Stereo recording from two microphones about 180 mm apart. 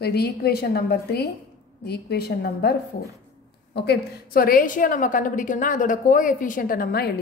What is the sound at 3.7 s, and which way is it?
A woman's voice, 60° left (ahead or behind).